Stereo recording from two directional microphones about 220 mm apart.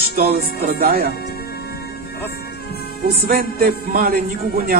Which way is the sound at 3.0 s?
40° right (ahead or behind).